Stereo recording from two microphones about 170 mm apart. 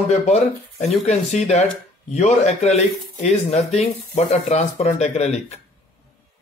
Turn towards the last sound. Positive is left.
turn(degrees=40)  # may be behind; listen again after turning